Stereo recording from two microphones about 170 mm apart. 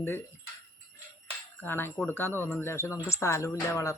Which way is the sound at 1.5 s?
10° left (ahead or behind).